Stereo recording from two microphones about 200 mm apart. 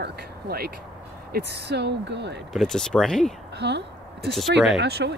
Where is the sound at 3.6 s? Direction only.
55° right (ahead or behind).